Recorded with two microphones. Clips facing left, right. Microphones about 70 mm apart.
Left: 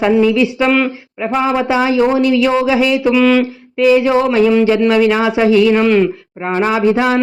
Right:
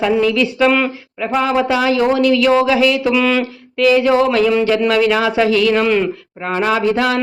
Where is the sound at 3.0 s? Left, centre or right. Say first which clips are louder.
Left 4 dB; centre.